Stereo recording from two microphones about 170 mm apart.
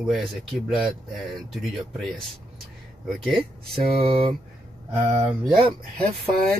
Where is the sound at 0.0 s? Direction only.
Centre (ahead or behind).